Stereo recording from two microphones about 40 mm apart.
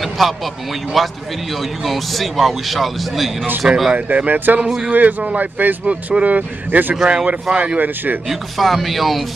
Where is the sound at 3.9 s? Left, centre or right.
Right.